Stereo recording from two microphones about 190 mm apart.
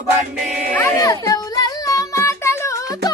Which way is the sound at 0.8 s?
15° left (ahead or behind).